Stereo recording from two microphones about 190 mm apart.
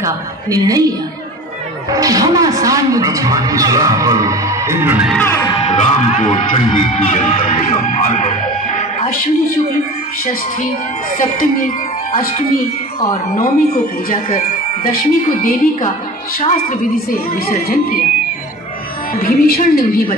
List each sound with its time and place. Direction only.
0.0 s a woman's voice: 20° right (ahead or behind)
5.1 s speech: 10° left (ahead or behind)
5.5 s speech: 35° left (ahead or behind)
11.1 s speech: 45° left (ahead or behind)
14.0 s speech: 45° left (ahead or behind)
19.1 s speech: 50° left (ahead or behind)